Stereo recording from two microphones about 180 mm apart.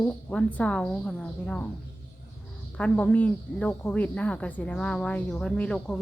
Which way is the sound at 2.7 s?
5° left (ahead or behind).